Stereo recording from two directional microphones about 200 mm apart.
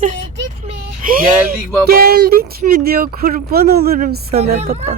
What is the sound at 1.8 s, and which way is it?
Speech, 50° right (ahead or behind).